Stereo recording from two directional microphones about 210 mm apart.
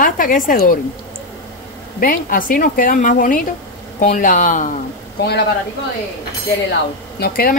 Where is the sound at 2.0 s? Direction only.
40° left (ahead or behind).